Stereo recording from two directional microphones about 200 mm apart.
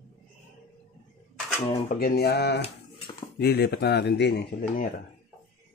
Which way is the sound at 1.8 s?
50° left (ahead or behind).